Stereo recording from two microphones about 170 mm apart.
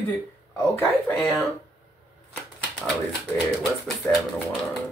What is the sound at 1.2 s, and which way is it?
Speech, centre (ahead or behind).